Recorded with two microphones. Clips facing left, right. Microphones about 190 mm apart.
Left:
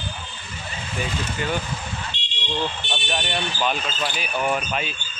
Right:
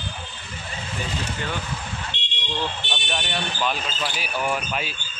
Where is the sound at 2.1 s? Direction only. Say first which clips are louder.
Right 1 dB; 65° right (ahead or behind).